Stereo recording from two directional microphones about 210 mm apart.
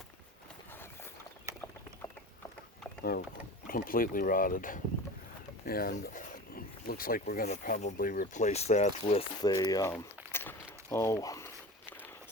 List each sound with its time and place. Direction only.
3.0 s speech: 45° left (ahead or behind)
9.4 s speech: 15° left (ahead or behind)
9.9 s a sound: 10° left (ahead or behind)